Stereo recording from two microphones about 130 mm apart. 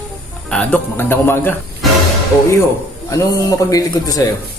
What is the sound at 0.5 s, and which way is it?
Speech, 10° left (ahead or behind).